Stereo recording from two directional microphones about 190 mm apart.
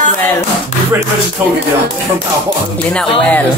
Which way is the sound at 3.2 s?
10° left (ahead or behind).